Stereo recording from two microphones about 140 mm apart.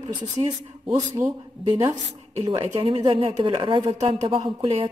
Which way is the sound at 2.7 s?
35° right (ahead or behind).